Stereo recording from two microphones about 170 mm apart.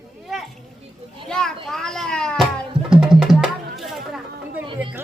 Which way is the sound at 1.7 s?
5° left (ahead or behind).